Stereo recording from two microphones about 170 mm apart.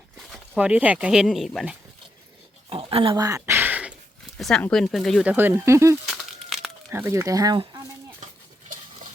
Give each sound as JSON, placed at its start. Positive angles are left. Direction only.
{"t": 0.3, "sound": "speech", "side_deg": -5}
{"t": 2.6, "sound": "a sound", "side_deg": -35}
{"t": 4.4, "sound": "speech", "side_deg": 5}
{"t": 6.1, "sound": "crumpling", "side_deg": 0}
{"t": 6.9, "sound": "speech", "side_deg": -15}